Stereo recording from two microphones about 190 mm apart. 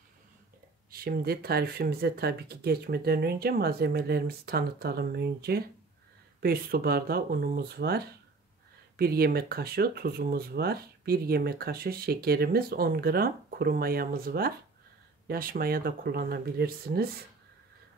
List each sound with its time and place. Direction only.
0.9 s speech: 55° right (ahead or behind)